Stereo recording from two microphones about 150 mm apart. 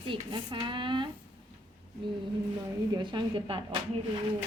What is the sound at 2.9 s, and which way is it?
Speech, 30° right (ahead or behind).